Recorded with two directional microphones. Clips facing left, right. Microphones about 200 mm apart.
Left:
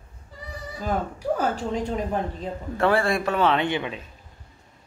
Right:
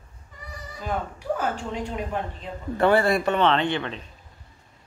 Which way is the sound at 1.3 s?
40° left (ahead or behind).